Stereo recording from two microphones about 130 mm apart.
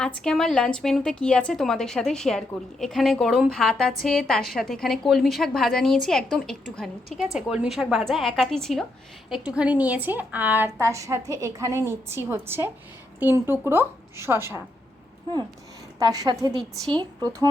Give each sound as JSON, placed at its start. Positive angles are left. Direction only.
{"t": 0.0, "sound": "a woman's voice", "side_deg": 5}
{"t": 9.3, "sound": "a woman's voice", "side_deg": -10}
{"t": 16.0, "sound": "a woman's voice", "side_deg": -30}